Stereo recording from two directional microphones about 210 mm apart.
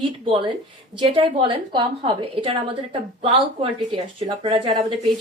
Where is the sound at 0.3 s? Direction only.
25° right (ahead or behind).